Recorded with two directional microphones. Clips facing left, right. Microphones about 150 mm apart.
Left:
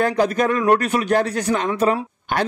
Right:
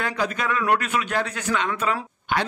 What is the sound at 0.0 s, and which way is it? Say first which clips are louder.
A man's voice: left 8 dB; 40° left (ahead or behind).